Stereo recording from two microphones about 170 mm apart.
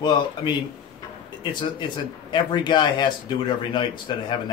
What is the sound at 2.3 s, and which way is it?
Speech, 25° left (ahead or behind).